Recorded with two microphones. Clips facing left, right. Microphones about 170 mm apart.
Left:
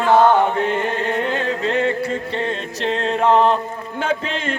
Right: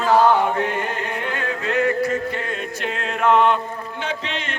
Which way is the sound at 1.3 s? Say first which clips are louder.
Left 4 dB; 30° left (ahead or behind).